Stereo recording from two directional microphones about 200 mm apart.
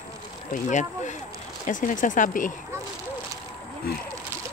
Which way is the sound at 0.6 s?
35° left (ahead or behind).